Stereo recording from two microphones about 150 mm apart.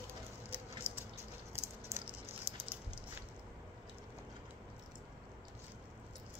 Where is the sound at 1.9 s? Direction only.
15° right (ahead or behind).